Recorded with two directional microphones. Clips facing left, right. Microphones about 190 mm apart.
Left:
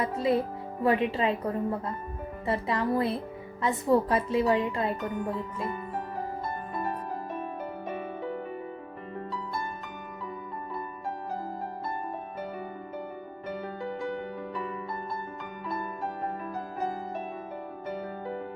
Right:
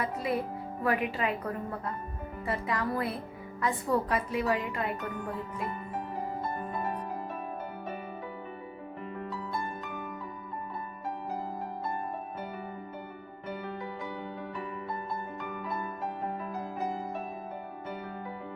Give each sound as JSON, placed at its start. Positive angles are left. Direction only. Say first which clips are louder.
{"t": 0.0, "sound": "a child's voice", "louder": "left 5 dB", "side_deg": 25}